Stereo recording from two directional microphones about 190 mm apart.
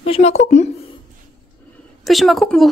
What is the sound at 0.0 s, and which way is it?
Speech, 35° left (ahead or behind).